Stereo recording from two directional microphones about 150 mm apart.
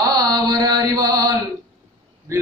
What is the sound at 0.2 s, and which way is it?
Mantra, 25° right (ahead or behind).